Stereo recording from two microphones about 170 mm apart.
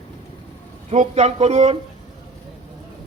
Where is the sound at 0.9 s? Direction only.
40° right (ahead or behind).